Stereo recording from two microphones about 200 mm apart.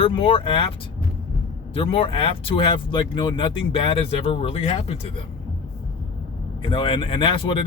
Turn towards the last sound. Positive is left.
turn(degrees=25)  # may be behind; listen again after turning